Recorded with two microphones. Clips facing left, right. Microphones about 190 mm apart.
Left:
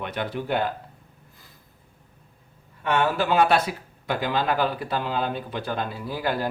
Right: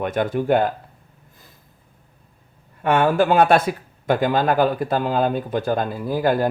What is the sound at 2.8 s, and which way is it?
Speech, 50° right (ahead or behind).